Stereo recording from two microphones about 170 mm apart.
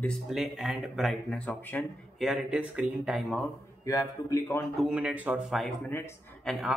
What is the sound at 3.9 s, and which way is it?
Speech, 20° left (ahead or behind).